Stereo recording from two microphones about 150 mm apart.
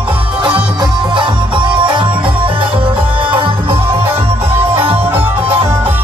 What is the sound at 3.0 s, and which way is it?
Music, 10° right (ahead or behind).